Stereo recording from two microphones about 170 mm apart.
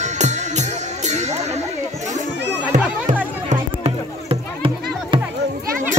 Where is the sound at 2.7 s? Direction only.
45° right (ahead or behind).